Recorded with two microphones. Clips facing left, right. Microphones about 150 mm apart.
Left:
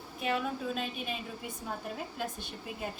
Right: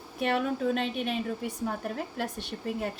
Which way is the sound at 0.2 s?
65° right (ahead or behind).